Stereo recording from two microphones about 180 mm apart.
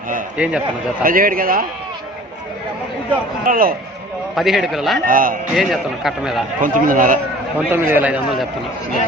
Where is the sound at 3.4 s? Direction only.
50° right (ahead or behind).